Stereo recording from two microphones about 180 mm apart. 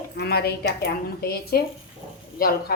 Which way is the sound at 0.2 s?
65° left (ahead or behind).